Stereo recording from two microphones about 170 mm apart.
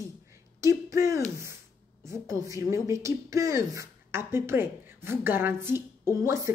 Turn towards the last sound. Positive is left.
turn(degrees=-15)  # may be behind; listen again after turning